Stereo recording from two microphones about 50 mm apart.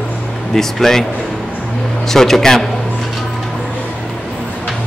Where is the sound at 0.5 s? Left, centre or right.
Centre.